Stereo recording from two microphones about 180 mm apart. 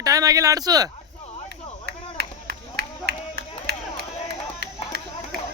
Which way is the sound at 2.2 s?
65° right (ahead or behind).